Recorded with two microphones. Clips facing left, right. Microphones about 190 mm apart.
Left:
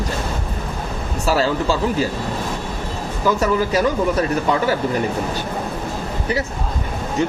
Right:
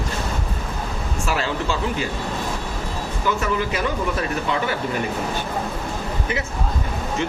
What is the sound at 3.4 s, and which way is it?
A man's voice, 40° left (ahead or behind).